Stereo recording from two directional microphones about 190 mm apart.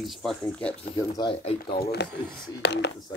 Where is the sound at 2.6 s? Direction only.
60° left (ahead or behind).